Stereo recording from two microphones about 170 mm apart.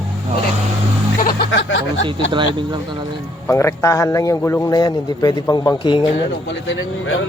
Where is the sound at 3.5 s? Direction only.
15° left (ahead or behind).